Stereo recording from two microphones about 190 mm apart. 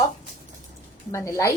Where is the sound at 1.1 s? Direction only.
15° left (ahead or behind).